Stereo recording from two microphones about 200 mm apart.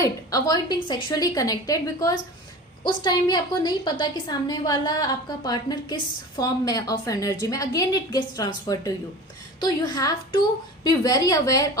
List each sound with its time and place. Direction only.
0.0 s a woman's voice: 15° left (ahead or behind)